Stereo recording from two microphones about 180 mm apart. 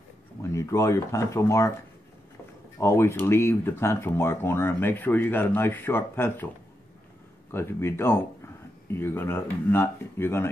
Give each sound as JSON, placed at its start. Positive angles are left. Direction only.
{"t": 0.4, "sound": "speech", "side_deg": 15}
{"t": 2.8, "sound": "speech", "side_deg": 15}
{"t": 7.5, "sound": "speech", "side_deg": 15}